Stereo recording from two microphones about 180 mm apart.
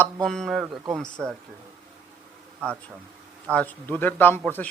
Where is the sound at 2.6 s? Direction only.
5° left (ahead or behind).